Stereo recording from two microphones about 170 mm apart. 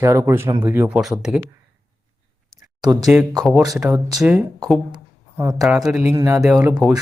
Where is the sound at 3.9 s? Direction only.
20° right (ahead or behind).